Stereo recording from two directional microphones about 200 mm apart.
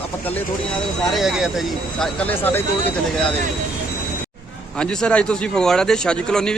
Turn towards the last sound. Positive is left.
turn(degrees=5)  # may be behind; listen again after turning